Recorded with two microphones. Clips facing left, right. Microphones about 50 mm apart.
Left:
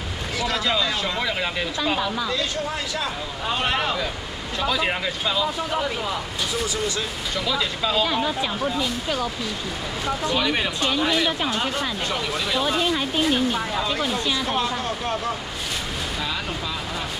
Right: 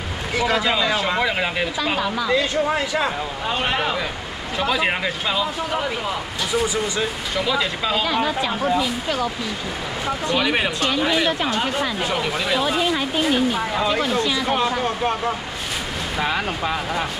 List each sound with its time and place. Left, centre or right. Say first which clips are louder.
0.4 s speech: right 4 dB; centre
3.4 s speech: right 1 dB; centre
10.3 s speech: right 5 dB; centre
16.2 s speech: right 9 dB; right